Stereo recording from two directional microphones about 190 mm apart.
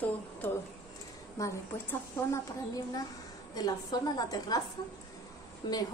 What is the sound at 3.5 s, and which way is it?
A woman's voice, 20° left (ahead or behind).